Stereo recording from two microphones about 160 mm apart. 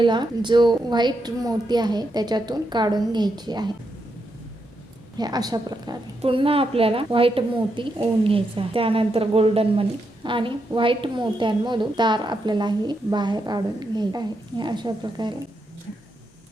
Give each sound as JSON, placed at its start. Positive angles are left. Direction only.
{"t": 0.0, "sound": "a woman's voice", "side_deg": -30}
{"t": 5.1, "sound": "a woman's voice", "side_deg": -25}